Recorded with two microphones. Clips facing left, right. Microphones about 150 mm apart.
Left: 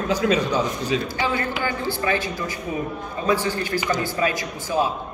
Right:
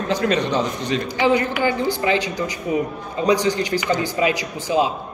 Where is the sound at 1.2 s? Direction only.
15° right (ahead or behind).